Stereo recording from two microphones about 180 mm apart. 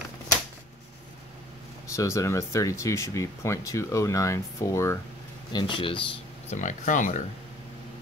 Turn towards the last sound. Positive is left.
turn(degrees=45)  # may be behind; listen again after turning